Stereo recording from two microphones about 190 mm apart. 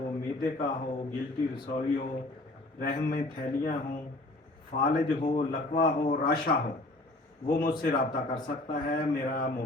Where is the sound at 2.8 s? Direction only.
50° left (ahead or behind).